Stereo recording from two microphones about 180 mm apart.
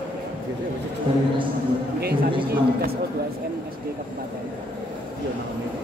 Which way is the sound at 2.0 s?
60° right (ahead or behind).